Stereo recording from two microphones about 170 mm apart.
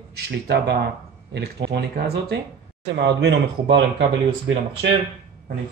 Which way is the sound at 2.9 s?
85° right.